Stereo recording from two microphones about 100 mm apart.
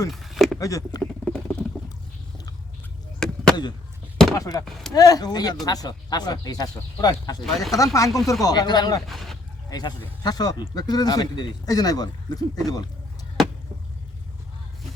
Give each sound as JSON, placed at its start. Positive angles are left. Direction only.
{"t": 0.1, "sound": "a sound", "side_deg": 0}
{"t": 0.6, "sound": "speech", "side_deg": 35}
{"t": 1.2, "sound": "a sound", "side_deg": 10}
{"t": 3.2, "sound": "chop", "side_deg": 5}
{"t": 4.4, "sound": "speech", "side_deg": 40}
{"t": 4.6, "sound": "speech", "side_deg": 0}
{"t": 4.9, "sound": "speech", "side_deg": 35}
{"t": 7.4, "sound": "speech", "side_deg": 0}
{"t": 7.8, "sound": "speech", "side_deg": 35}
{"t": 9.0, "sound": "speech", "side_deg": 0}
{"t": 9.6, "sound": "speech", "side_deg": 40}